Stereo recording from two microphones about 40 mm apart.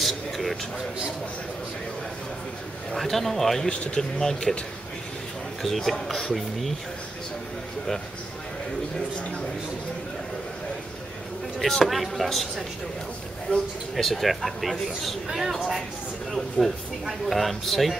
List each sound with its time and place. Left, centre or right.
0.0 s a sound: centre
2.9 s a man's voice: centre
3.6 s speech: left
4.2 s a man's voice: centre
5.6 s a man's voice: centre
11.8 s a man's voice: centre
16.3 s a man's voice: centre